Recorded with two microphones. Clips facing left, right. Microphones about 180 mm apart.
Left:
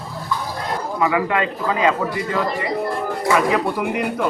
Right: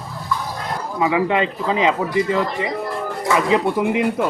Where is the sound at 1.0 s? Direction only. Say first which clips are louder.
Right 2 dB; 20° right (ahead or behind).